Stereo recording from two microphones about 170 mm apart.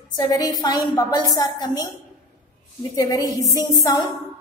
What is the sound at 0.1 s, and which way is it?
A woman's voice, 25° left (ahead or behind).